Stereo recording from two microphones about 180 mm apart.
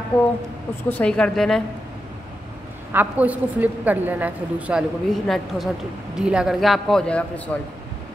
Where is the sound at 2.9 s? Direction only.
10° right (ahead or behind).